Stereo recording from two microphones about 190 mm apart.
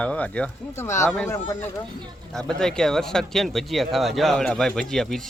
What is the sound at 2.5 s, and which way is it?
Speech, 5° left (ahead or behind).